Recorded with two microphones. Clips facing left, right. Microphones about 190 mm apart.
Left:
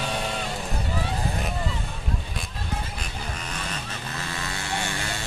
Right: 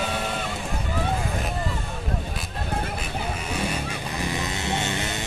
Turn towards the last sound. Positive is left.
turn(degrees=-20)  # may be behind; listen again after turning